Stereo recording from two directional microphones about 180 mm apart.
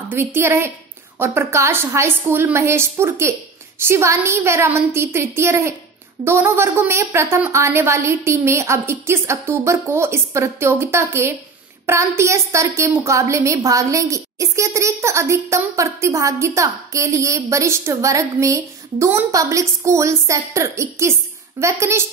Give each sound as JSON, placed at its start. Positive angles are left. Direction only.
{"t": 0.1, "sound": "a woman's voice", "side_deg": -10}